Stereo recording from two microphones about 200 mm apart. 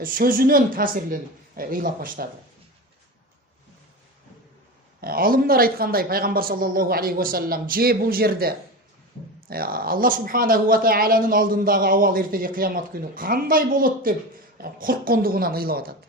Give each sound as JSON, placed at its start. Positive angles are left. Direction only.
{"t": 0.0, "sound": "speech", "side_deg": -45}
{"t": 4.9, "sound": "speech", "side_deg": -45}